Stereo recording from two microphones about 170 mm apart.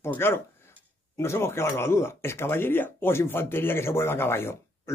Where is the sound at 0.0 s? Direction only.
15° left (ahead or behind).